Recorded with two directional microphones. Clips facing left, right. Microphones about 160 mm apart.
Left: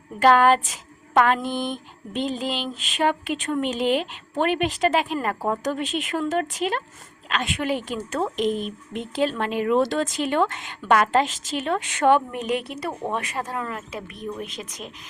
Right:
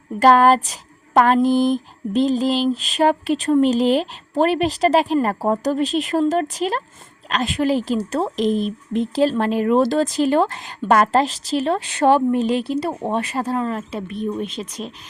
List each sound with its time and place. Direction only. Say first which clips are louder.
0.2 s a woman's voice: right 3 dB; 35° right (ahead or behind)